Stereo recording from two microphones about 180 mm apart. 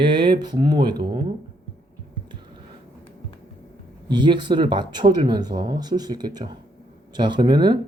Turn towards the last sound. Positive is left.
turn(degrees=-25)  # may be behind; listen again after turning